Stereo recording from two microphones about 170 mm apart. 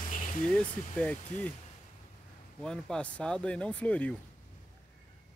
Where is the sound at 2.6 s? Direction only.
5° left (ahead or behind).